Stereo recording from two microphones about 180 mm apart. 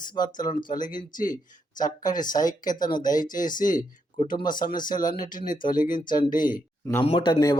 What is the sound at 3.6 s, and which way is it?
Speech, 45° left (ahead or behind).